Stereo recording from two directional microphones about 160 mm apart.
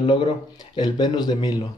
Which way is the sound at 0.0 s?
30° left (ahead or behind).